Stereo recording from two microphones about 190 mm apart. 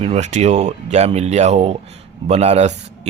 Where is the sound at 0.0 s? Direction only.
35° right (ahead or behind).